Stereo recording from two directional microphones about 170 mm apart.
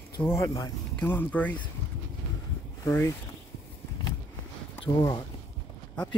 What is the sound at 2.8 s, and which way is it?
Speech, 15° left (ahead or behind).